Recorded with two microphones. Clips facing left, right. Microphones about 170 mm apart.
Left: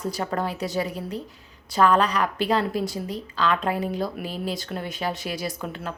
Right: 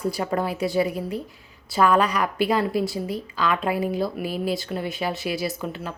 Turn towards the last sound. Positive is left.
turn(degrees=45)  # may be behind; listen again after turning